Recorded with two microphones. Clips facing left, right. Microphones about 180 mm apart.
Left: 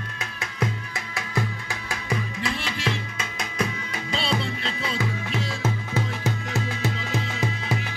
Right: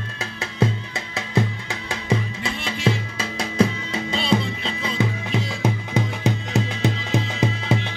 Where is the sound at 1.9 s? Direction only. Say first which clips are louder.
Right 5 dB; 25° right (ahead or behind).